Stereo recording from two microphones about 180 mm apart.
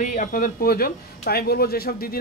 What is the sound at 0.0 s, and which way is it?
Speech, 45° left (ahead or behind).